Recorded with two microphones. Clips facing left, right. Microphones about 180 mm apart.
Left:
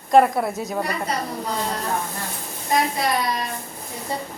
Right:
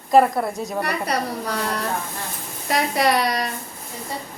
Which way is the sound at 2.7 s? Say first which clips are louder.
Right 2 dB; 80° right.